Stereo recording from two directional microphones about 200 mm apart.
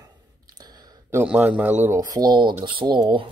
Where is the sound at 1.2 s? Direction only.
5° right (ahead or behind).